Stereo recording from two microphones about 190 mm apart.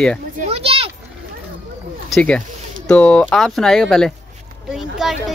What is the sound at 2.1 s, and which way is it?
Speech, 5° left (ahead or behind).